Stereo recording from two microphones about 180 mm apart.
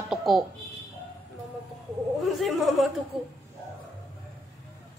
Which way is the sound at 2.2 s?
Centre (ahead or behind).